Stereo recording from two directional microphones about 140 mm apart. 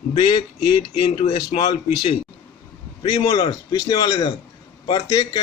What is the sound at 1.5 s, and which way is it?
Speech, 50° left (ahead or behind).